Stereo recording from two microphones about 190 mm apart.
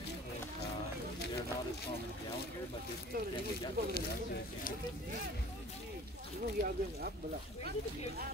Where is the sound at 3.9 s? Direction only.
55° left (ahead or behind).